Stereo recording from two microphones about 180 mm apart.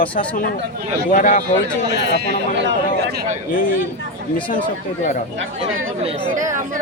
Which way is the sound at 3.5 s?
50° left (ahead or behind).